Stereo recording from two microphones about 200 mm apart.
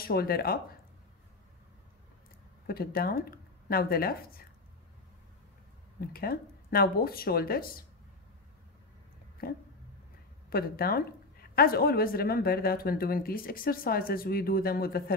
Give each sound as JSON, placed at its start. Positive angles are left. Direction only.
{"t": 0.0, "sound": "a woman's voice", "side_deg": 50}
{"t": 2.6, "sound": "speech", "side_deg": 50}
{"t": 5.9, "sound": "a woman's voice", "side_deg": 50}
{"t": 9.4, "sound": "a woman's voice", "side_deg": 50}